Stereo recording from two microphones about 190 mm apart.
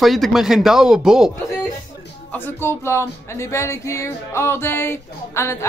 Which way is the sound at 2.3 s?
10° left (ahead or behind).